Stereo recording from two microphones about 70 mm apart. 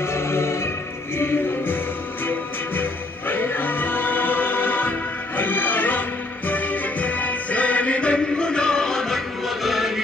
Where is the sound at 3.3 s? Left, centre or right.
Left.